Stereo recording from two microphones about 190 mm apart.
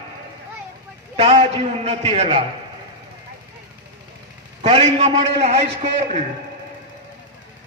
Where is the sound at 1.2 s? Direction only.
30° right (ahead or behind).